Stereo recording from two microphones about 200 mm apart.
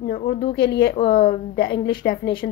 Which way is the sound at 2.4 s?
50° left (ahead or behind).